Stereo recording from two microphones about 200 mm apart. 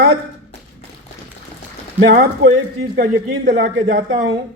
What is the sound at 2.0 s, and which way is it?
Speech, 50° right (ahead or behind).